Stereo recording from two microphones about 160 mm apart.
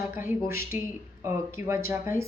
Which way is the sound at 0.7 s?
10° right (ahead or behind).